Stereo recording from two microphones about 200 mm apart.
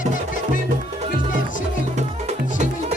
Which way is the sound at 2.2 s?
35° right (ahead or behind).